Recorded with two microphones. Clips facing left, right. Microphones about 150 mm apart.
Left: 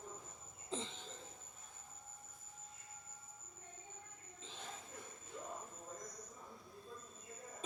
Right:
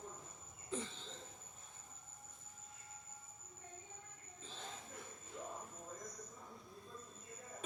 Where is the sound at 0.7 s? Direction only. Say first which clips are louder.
Right 1 dB; 20° left (ahead or behind).